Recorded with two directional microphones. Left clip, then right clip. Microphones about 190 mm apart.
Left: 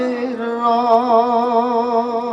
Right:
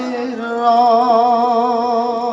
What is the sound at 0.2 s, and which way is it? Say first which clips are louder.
Music: right 1 dB; 25° left (ahead or behind).